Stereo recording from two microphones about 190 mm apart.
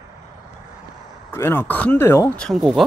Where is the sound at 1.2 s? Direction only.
10° left (ahead or behind).